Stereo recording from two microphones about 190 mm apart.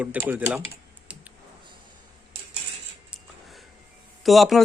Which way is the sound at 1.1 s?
5° right (ahead or behind).